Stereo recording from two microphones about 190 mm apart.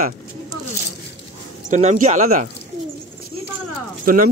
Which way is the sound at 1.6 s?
40° right (ahead or behind).